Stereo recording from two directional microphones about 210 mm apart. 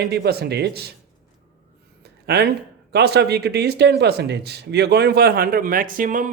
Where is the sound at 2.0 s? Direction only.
50° right (ahead or behind).